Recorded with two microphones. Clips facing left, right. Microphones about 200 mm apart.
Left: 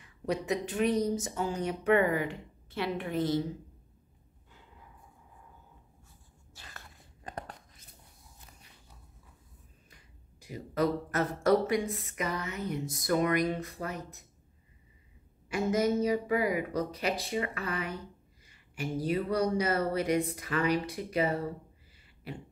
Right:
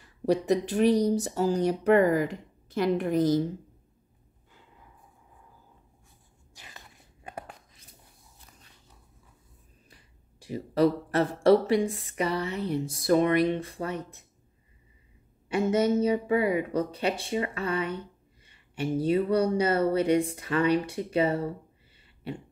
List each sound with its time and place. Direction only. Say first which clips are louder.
0.0 s speech: right 7 dB; 35° right (ahead or behind)
6.5 s a sound: right 1 dB; 15° right (ahead or behind)
7.2 s whispering: right 1 dB; 10° right (ahead or behind)
9.8 s speech: right 1 dB; 30° right (ahead or behind)
15.4 s speech: right 4 dB; 30° right (ahead or behind)